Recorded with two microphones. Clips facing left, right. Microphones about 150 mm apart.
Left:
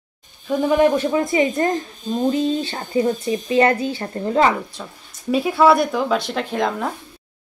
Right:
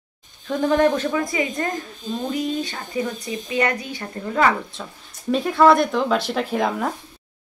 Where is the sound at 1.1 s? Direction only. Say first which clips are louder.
Left 5 dB; 25° left (ahead or behind).